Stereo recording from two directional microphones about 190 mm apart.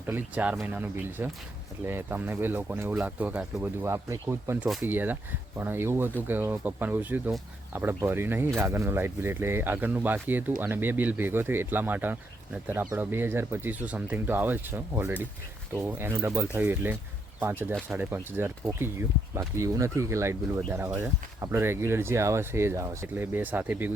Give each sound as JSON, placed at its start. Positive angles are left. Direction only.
{"t": 0.1, "sound": "speech", "side_deg": -10}